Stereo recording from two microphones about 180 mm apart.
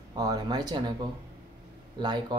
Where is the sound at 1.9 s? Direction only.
25° right (ahead or behind).